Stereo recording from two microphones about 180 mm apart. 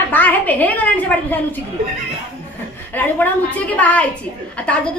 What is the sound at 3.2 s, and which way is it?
Speech, 10° left (ahead or behind).